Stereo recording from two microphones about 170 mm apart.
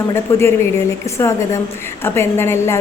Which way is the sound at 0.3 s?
15° left (ahead or behind).